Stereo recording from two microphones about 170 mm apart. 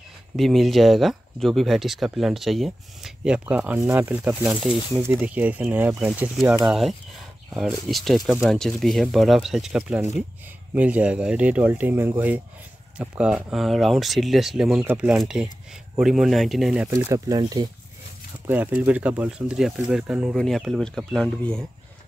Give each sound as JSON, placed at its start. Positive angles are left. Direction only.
{"t": 0.4, "sound": "speech", "side_deg": 0}
{"t": 16.9, "sound": "speech", "side_deg": -20}
{"t": 18.5, "sound": "speech", "side_deg": -10}